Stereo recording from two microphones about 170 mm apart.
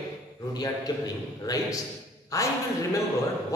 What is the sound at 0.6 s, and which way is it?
A man's voice, 20° left (ahead or behind).